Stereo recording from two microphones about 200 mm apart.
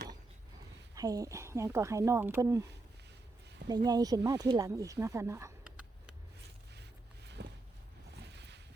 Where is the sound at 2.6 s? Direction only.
60° right (ahead or behind).